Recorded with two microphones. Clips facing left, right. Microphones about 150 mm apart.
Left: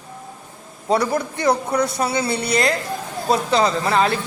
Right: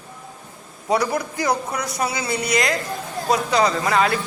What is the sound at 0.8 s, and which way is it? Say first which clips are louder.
A man's voice: left 2 dB; 25° left (ahead or behind).